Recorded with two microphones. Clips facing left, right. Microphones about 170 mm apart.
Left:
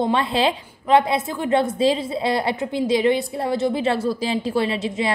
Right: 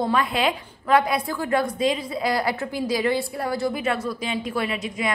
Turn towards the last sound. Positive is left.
turn(degrees=30)  # may be behind; listen again after turning